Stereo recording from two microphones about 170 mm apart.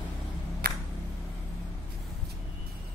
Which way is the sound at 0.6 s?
60° right (ahead or behind).